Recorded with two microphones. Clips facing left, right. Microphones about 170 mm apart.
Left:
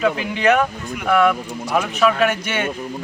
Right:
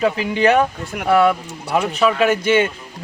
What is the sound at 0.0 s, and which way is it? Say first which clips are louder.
Speech: right 2 dB; 35° right (ahead or behind).